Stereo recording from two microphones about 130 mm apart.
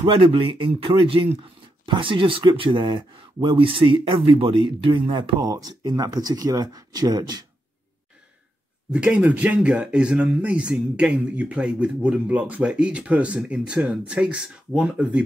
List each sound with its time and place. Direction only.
0.0 s speech: 45° right (ahead or behind)
8.9 s speech: 10° right (ahead or behind)